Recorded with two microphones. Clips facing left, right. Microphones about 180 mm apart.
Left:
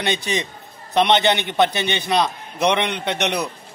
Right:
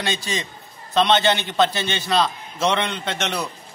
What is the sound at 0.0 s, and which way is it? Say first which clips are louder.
A man's voice: left 3 dB; 20° left (ahead or behind).